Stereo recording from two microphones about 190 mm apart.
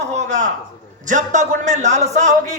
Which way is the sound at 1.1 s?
40° right (ahead or behind).